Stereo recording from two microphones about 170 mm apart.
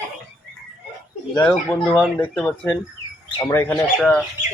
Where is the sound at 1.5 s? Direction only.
10° left (ahead or behind).